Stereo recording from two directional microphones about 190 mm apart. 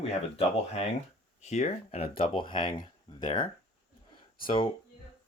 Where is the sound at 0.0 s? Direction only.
30° left (ahead or behind).